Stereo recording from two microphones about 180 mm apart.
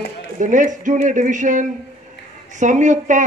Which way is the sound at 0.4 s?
45° right (ahead or behind).